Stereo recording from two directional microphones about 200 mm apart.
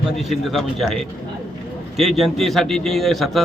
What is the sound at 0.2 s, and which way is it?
Speech, centre (ahead or behind).